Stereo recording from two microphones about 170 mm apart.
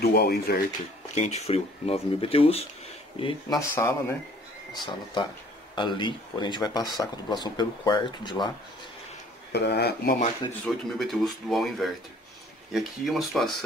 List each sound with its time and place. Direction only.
0.0 s speech: 65° left (ahead or behind)
1.1 s speech: 40° left (ahead or behind)
3.7 s speech: 10° left (ahead or behind)
4.7 s speech: 25° left (ahead or behind)
9.5 s speech: 80° left
10.6 s speech: centre (ahead or behind)